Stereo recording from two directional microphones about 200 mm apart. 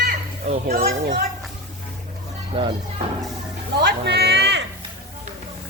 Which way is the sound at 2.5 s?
25° right (ahead or behind).